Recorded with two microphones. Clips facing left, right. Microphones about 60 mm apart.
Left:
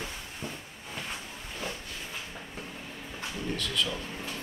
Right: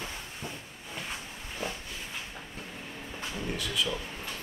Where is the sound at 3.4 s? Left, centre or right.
Centre.